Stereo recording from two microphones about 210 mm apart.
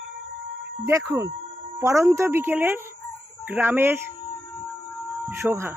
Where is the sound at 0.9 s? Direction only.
15° right (ahead or behind).